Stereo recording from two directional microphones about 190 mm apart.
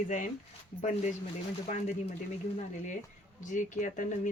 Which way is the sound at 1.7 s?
40° left (ahead or behind).